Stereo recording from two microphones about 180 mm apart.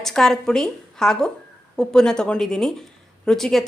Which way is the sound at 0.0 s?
5° left (ahead or behind).